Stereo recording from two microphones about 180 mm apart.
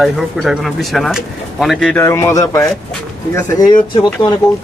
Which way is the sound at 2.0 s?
15° left (ahead or behind).